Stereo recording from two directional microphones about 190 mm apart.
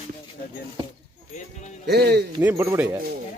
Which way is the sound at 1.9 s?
60° right (ahead or behind).